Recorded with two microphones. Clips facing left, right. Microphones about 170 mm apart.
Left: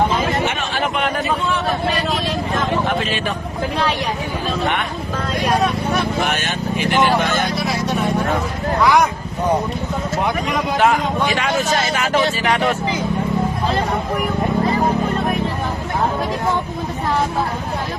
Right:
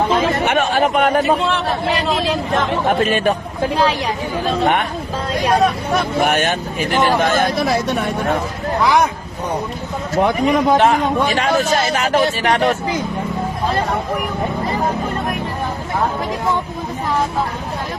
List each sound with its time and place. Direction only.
0.4 s a sound: 65° right (ahead or behind)
0.7 s a man's voice: 45° right (ahead or behind)
1.9 s speech: 30° right (ahead or behind)
2.8 s speech: 50° right (ahead or behind)
6.2 s speech: 50° right (ahead or behind)
10.8 s a man's voice: 40° right (ahead or behind)